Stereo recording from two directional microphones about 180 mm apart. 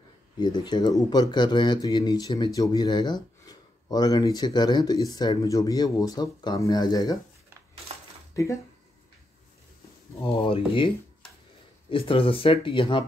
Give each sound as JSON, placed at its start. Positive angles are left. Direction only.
{"t": 0.4, "sound": "speech", "side_deg": 25}
{"t": 10.2, "sound": "speech", "side_deg": 30}
{"t": 11.9, "sound": "speech", "side_deg": 30}